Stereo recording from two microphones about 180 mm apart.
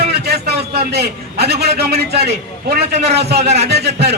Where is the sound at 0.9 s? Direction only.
65° right (ahead or behind).